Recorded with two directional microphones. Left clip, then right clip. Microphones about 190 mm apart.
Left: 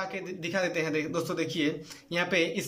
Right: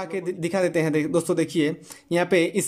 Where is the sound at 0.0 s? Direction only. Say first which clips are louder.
Right 6 dB; 30° right (ahead or behind).